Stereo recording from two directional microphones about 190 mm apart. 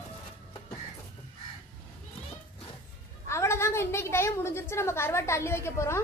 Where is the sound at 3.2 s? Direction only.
15° left (ahead or behind).